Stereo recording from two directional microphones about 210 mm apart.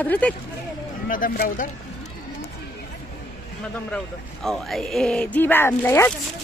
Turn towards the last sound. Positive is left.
turn(degrees=10)  # may be behind; listen again after turning